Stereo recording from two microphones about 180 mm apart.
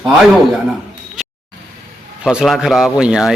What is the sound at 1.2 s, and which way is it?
Vehicle, 5° right (ahead or behind).